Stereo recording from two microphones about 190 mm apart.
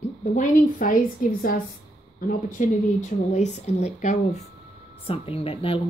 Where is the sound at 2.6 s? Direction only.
45° left (ahead or behind).